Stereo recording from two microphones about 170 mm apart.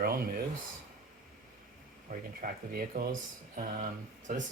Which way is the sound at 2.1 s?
55° right (ahead or behind).